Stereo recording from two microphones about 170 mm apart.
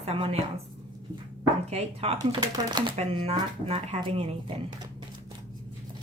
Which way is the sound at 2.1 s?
25° right (ahead or behind).